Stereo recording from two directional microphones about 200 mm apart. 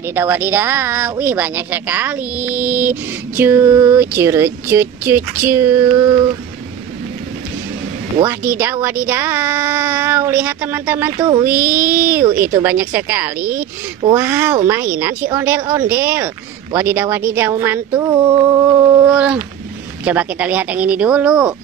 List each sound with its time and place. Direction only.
0.1 s speech: 10° right (ahead or behind)
9.0 s speech: 10° right (ahead or behind)
11.1 s speech: 20° right (ahead or behind)
11.4 s speech: 10° right (ahead or behind)